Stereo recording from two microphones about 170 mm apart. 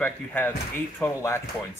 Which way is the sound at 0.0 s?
10° left (ahead or behind).